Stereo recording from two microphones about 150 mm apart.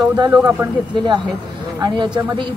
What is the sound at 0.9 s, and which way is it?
Speech, 30° right (ahead or behind).